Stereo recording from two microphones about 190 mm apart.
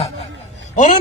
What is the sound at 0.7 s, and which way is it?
Speech, 45° left (ahead or behind).